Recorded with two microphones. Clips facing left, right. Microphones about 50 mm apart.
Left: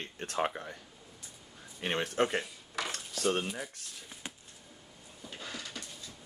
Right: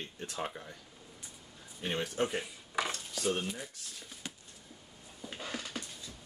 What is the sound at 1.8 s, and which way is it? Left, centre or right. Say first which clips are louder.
Speech: left 3 dB; left.